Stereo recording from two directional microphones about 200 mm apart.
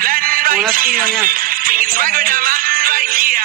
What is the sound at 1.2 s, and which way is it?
Music, 45° right (ahead or behind).